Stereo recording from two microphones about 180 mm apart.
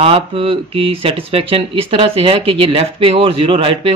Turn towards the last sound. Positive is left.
turn(degrees=-30)  # may be behind; listen again after turning